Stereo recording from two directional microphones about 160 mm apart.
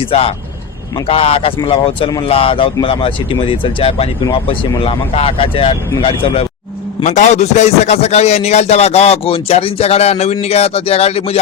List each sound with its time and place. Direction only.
0.1 s a man's voice: 35° left (ahead or behind)
7.0 s a man's voice: 50° left (ahead or behind)